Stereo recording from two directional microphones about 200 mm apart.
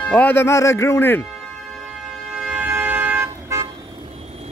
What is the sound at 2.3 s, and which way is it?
Vehicle, 5° right (ahead or behind).